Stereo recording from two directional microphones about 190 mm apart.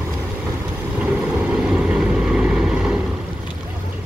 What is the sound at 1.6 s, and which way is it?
Vehicle, 5° right (ahead or behind).